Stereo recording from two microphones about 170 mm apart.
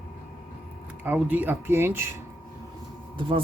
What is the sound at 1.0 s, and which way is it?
Speech, 10° right (ahead or behind).